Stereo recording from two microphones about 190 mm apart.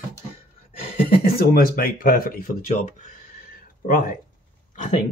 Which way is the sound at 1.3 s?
50° left (ahead or behind).